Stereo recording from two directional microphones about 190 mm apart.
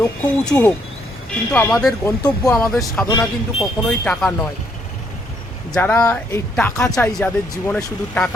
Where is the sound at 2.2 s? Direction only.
20° left (ahead or behind).